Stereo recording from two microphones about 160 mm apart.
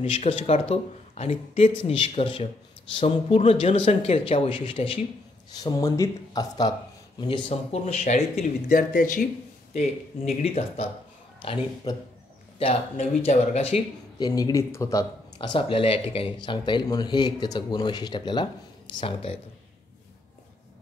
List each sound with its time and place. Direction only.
0.0 s speech: 35° left (ahead or behind)
5.6 s speech: 20° left (ahead or behind)
7.8 s speech: 45° left (ahead or behind)
9.8 s speech: 40° left (ahead or behind)
11.4 s speech: 30° left (ahead or behind)
12.9 s speech: 50° left (ahead or behind)
14.2 s speech: 25° left (ahead or behind)